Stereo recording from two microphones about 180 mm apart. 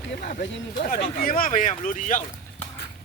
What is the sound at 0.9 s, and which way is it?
Speech, 50° left (ahead or behind).